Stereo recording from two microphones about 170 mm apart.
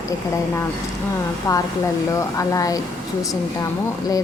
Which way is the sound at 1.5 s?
20° left (ahead or behind).